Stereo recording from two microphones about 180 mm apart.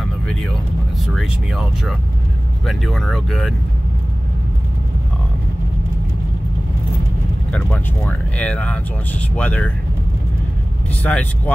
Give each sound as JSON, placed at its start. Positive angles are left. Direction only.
{"t": 1.0, "sound": "speech", "side_deg": 0}
{"t": 7.5, "sound": "speech", "side_deg": 10}
{"t": 11.0, "sound": "speech", "side_deg": 5}